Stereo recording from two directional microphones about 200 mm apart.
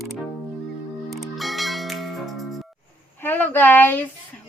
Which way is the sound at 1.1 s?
Centre (ahead or behind).